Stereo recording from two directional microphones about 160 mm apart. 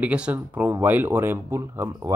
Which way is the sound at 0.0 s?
10° right (ahead or behind).